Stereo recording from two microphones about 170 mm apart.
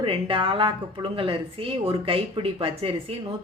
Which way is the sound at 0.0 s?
30° right (ahead or behind).